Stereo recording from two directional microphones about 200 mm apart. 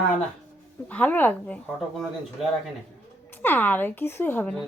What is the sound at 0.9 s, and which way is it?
A woman's voice, 5° left (ahead or behind).